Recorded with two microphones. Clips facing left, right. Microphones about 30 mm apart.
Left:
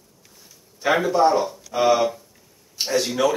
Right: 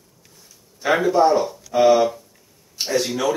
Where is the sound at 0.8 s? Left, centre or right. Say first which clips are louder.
Right 1 dB; centre.